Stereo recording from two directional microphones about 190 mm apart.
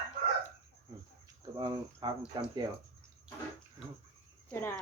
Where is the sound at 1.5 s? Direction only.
20° right (ahead or behind).